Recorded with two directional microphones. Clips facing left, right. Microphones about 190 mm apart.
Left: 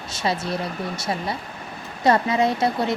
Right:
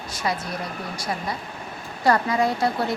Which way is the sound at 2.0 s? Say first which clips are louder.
Left 2 dB; 20° left (ahead or behind).